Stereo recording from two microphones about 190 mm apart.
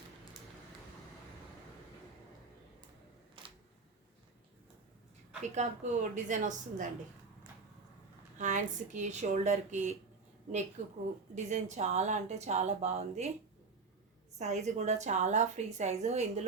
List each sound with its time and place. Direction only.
3.4 s camera: 25° right (ahead or behind)
5.4 s a woman's voice: 40° right (ahead or behind)
8.4 s a woman's voice: 40° right (ahead or behind)
14.3 s a woman's voice: 40° right (ahead or behind)